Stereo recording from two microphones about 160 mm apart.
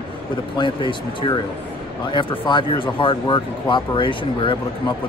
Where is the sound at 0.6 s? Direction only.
30° left (ahead or behind).